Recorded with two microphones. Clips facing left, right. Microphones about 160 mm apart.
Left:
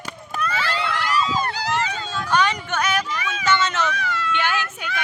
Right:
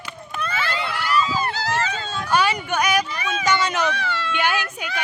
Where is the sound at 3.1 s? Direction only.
30° right (ahead or behind).